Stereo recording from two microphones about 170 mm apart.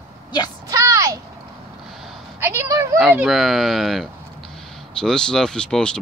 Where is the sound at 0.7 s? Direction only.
20° right (ahead or behind).